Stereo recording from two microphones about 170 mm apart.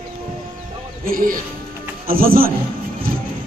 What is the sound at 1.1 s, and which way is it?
Speech, 55° right (ahead or behind).